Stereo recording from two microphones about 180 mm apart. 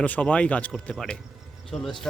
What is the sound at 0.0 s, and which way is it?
A man's voice, 10° left (ahead or behind).